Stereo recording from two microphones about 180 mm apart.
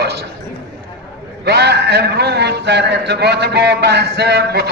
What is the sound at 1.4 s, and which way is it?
A man's voice, 70° right (ahead or behind).